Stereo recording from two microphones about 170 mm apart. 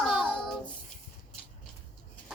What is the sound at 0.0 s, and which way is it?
Child singing, centre (ahead or behind).